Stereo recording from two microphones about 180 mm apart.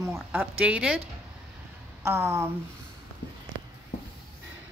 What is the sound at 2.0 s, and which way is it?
Speech, 15° right (ahead or behind).